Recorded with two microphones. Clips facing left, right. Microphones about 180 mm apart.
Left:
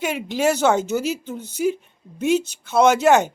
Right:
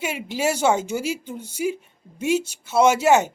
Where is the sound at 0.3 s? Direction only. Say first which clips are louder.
Left 2 dB; 10° right (ahead or behind).